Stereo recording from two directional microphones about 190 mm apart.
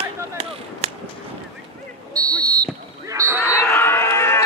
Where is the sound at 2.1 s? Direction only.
20° right (ahead or behind).